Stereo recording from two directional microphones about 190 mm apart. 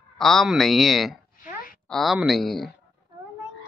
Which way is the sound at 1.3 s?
45° left (ahead or behind).